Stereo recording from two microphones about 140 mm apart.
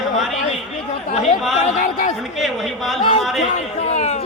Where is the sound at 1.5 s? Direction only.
55° left (ahead or behind).